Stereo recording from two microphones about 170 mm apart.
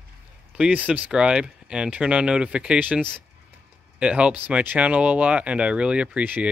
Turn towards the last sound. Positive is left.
turn(degrees=-5)  # may be behind; listen again after turning